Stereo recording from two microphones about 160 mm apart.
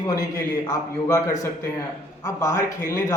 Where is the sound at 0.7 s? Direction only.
20° left (ahead or behind).